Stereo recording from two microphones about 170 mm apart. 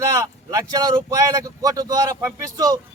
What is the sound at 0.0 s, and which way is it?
Speech, 20° right (ahead or behind).